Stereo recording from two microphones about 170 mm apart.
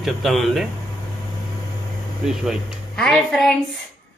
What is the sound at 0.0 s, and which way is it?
Speech, centre (ahead or behind).